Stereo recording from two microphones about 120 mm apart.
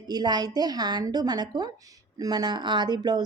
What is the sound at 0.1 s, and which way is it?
A woman's voice, 35° right (ahead or behind).